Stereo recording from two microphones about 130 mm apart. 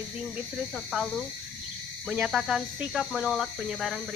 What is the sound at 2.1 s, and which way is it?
Speech, 5° right (ahead or behind).